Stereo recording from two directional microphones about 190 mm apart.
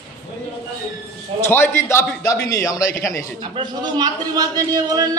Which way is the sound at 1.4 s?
10° left (ahead or behind).